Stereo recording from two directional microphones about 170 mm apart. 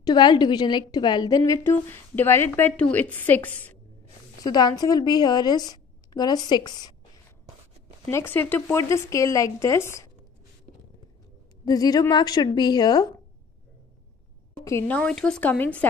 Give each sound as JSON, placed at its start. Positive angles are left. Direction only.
{"t": 0.0, "sound": "a woman's voice", "side_deg": 25}
{"t": 4.4, "sound": "a woman's voice", "side_deg": 25}
{"t": 8.1, "sound": "a woman's voice", "side_deg": 15}
{"t": 11.6, "sound": "a woman's voice", "side_deg": 20}
{"t": 14.6, "sound": "a woman's voice", "side_deg": 15}